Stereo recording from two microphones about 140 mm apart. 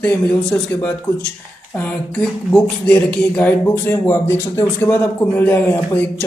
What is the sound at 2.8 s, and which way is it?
Speech, 10° left (ahead or behind).